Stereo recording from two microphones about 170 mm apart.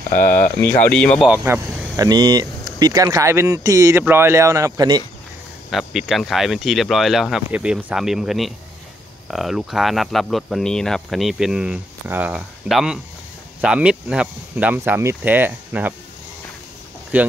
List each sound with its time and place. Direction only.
0.1 s speech: 55° left (ahead or behind)
0.6 s speech: 10° left (ahead or behind)
1.3 s speech: 15° right (ahead or behind)
5.7 s speech: centre (ahead or behind)
17.1 s speech: 10° right (ahead or behind)